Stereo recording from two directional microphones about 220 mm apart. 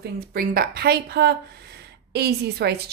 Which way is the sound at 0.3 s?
40° right (ahead or behind).